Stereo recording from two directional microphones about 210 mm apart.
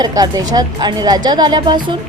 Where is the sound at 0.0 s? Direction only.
15° right (ahead or behind).